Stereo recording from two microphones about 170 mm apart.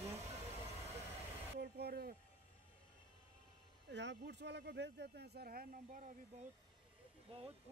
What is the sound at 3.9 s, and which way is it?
Speech, 90° right.